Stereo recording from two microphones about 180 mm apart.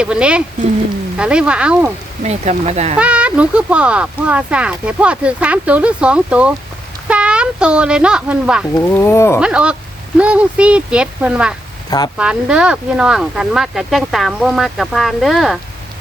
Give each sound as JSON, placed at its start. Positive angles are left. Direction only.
{"t": 0.0, "sound": "speech", "side_deg": -5}
{"t": 2.2, "sound": "speech", "side_deg": -35}
{"t": 3.0, "sound": "speech", "side_deg": -5}
{"t": 8.7, "sound": "speech", "side_deg": 15}
{"t": 9.4, "sound": "speech", "side_deg": -5}
{"t": 11.9, "sound": "speech", "side_deg": 20}
{"t": 12.1, "sound": "speech", "side_deg": -5}